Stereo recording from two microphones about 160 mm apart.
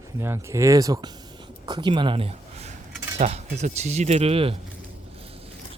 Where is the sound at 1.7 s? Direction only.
30° right (ahead or behind).